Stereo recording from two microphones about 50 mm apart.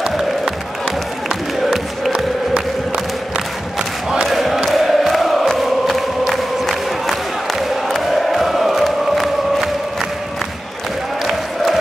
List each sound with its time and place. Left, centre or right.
4.1 s a sound: centre
4.6 s chant: centre
11.2 s music: centre